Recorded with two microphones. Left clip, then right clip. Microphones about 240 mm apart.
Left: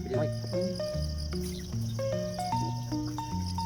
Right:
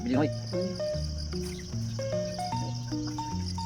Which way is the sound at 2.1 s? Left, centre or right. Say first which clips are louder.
Even; centre.